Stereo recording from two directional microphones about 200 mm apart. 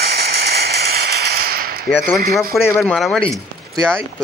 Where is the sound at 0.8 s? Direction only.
50° right (ahead or behind).